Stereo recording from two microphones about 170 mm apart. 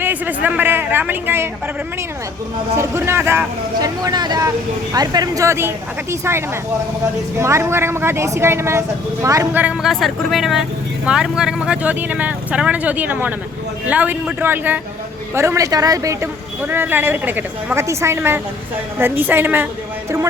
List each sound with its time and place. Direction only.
0.0 s a sound: 10° right (ahead or behind)
0.4 s speech: 10° right (ahead or behind)
2.7 s speech: 15° right (ahead or behind)
9.9 s speech: centre (ahead or behind)